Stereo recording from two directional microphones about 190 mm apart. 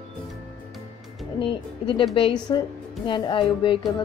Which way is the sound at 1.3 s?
25° left (ahead or behind).